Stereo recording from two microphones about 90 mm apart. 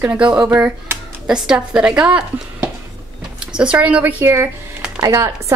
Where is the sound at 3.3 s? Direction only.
10° right (ahead or behind).